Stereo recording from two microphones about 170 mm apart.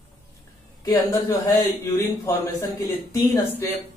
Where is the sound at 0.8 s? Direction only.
20° left (ahead or behind).